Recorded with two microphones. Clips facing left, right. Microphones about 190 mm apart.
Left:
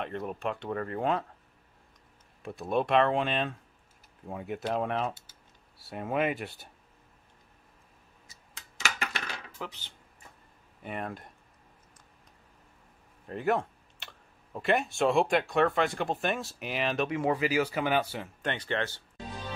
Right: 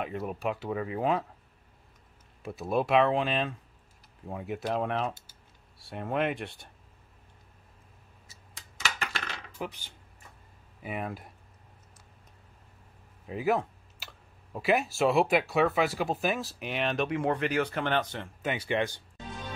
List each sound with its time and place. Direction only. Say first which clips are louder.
0.0 s speech: right 1 dB; 5° right (ahead or behind)
2.4 s speech: even; centre (ahead or behind)
9.6 s speech: right 4 dB; 15° right (ahead or behind)
10.8 s speech: right 1 dB; 5° right (ahead or behind)
13.3 s speech: right 1 dB; 5° right (ahead or behind)
18.4 s speech: right 3 dB; 10° right (ahead or behind)